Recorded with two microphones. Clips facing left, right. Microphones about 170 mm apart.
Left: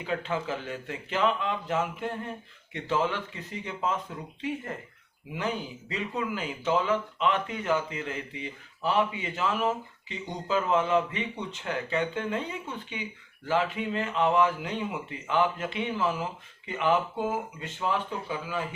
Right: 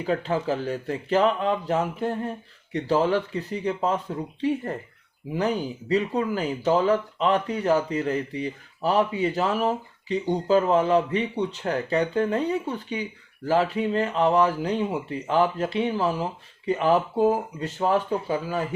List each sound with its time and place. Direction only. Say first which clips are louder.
0.0 s speech: right 6 dB; 40° right (ahead or behind)